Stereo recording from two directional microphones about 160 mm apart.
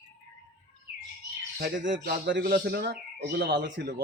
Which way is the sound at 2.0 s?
80° right.